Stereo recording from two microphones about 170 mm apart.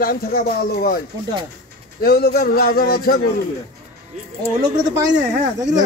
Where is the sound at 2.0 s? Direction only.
65° left (ahead or behind).